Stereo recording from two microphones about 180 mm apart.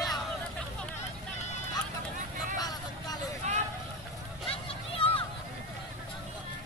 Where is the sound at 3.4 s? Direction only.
40° right (ahead or behind).